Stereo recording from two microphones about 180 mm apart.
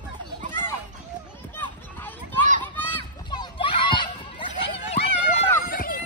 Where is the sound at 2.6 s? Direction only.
10° left (ahead or behind).